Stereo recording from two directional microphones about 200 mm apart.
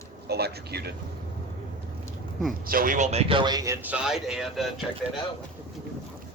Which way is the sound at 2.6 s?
45° right (ahead or behind).